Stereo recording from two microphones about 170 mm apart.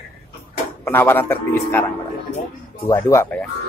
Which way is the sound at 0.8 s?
15° left (ahead or behind).